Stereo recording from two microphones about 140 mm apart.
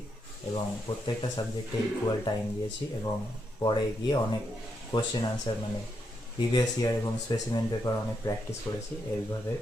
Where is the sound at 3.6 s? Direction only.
35° left (ahead or behind).